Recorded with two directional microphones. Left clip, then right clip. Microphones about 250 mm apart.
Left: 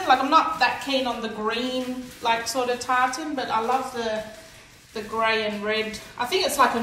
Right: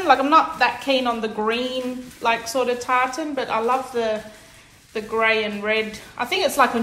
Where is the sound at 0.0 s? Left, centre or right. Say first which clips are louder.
Right 3 dB; centre.